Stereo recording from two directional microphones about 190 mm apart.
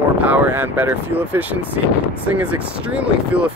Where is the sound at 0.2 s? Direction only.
10° right (ahead or behind).